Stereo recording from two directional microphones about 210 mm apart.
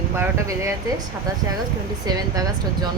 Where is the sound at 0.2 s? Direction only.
15° right (ahead or behind).